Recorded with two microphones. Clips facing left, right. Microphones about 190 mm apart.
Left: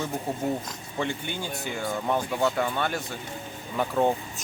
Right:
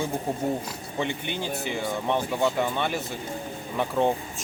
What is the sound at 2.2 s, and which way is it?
Speech, 10° right (ahead or behind).